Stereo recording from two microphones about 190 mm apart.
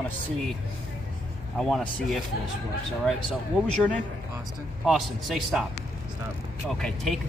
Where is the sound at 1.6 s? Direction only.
Centre (ahead or behind).